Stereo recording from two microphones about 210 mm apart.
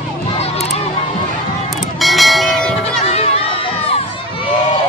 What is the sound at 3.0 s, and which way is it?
Music, 30° left (ahead or behind).